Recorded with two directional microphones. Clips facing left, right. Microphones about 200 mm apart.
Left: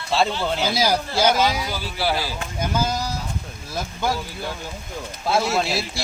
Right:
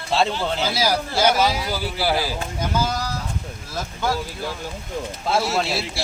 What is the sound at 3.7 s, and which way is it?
Speech, 15° left (ahead or behind).